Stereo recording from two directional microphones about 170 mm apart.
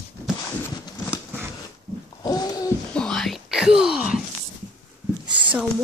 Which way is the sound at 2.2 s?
20° left (ahead or behind).